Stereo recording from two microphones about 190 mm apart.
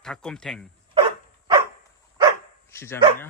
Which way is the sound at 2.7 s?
10° left (ahead or behind).